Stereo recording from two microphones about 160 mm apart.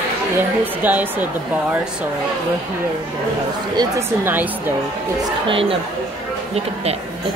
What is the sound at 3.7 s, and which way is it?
Speech, 25° right (ahead or behind).